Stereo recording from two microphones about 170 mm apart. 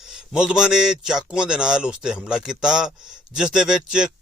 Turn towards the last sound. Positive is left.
turn(degrees=-5)  # may be behind; listen again after turning